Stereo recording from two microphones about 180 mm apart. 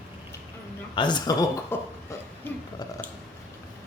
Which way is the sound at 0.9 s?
25° left (ahead or behind).